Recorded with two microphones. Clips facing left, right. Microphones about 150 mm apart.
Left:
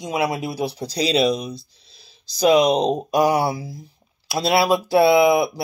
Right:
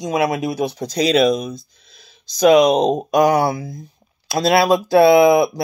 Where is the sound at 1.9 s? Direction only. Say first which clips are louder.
Right 3 dB; 35° left (ahead or behind).